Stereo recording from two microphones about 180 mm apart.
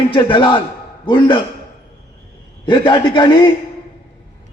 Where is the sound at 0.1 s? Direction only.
25° left (ahead or behind).